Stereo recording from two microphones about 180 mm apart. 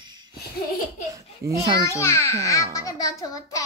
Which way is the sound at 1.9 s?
15° left (ahead or behind).